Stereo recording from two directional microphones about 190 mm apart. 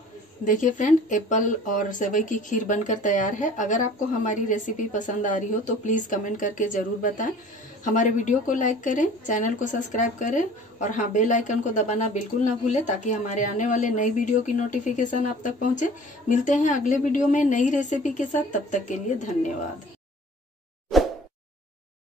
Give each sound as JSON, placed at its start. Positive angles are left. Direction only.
{"t": 0.5, "sound": "speech", "side_deg": 40}
{"t": 20.9, "sound": "plop", "side_deg": 0}